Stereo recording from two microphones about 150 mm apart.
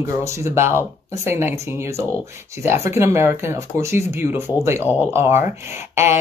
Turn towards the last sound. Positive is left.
turn(degrees=-15)  # may be behind; listen again after turning